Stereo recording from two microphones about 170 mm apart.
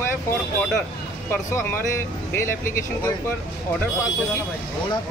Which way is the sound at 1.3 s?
10° left (ahead or behind).